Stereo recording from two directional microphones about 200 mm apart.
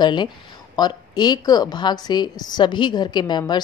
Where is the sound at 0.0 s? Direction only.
25° left (ahead or behind).